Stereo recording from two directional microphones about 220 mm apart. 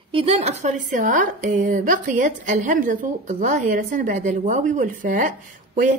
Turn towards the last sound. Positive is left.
turn(degrees=-35)  # may be behind; listen again after turning